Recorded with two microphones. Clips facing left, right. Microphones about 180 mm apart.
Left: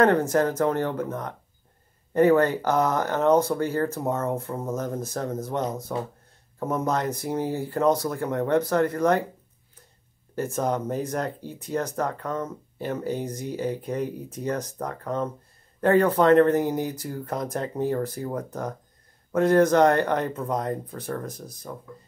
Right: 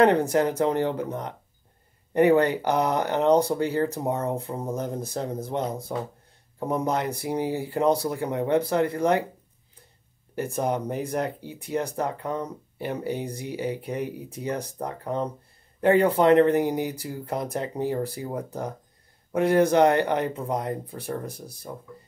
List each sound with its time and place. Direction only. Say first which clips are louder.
0.3 s speech: even; 15° right (ahead or behind)
6.6 s speech: even; 15° right (ahead or behind)
10.3 s speech: even; 15° right (ahead or behind)